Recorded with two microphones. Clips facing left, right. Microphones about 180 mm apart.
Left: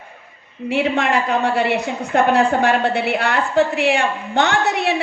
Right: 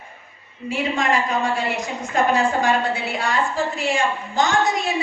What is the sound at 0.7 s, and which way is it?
A woman's voice, 65° left (ahead or behind).